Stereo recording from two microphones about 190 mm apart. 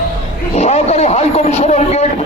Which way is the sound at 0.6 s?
35° left (ahead or behind).